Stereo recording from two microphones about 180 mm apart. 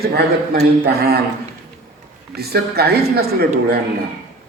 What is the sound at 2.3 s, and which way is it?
A man's voice, 60° right (ahead or behind).